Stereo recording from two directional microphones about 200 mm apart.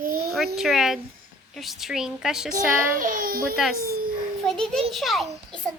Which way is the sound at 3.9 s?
50° right (ahead or behind).